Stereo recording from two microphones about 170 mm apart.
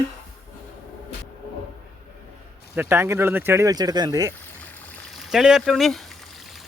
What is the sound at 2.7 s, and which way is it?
Speech, 15° right (ahead or behind).